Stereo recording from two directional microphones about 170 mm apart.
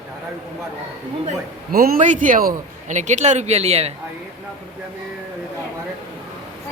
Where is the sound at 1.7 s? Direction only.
60° right (ahead or behind).